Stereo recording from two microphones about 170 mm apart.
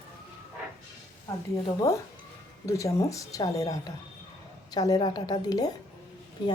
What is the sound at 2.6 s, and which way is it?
A woman's voice, 20° left (ahead or behind).